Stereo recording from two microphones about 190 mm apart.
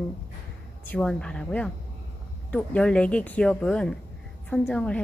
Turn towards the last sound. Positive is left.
turn(degrees=5)  # may be behind; listen again after turning